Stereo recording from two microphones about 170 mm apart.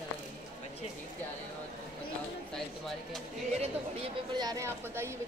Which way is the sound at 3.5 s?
40° right (ahead or behind).